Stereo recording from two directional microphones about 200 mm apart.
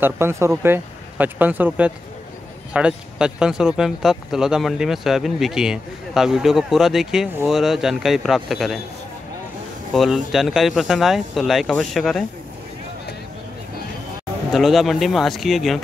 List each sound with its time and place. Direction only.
0.0 s speech: 15° right (ahead or behind)
9.9 s speech: centre (ahead or behind)
14.5 s speech: centre (ahead or behind)